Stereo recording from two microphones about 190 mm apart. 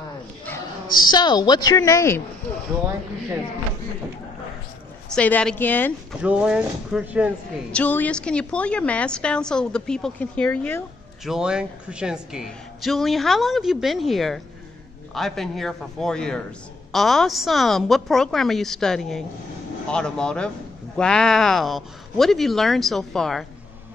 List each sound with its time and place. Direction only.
1.0 s a woman's voice: 25° left (ahead or behind)
5.1 s a woman's voice: 5° left (ahead or behind)
6.2 s a man's voice: 5° right (ahead or behind)
7.7 s a man's voice: 10° left (ahead or behind)
11.2 s a man's voice: 5° right (ahead or behind)